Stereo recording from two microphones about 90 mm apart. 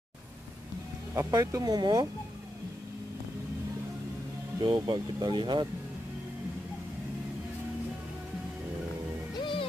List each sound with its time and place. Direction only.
1.3 s speech: 40° right (ahead or behind)
4.6 s speech: 55° right (ahead or behind)
9.4 s music: 70° left (ahead or behind)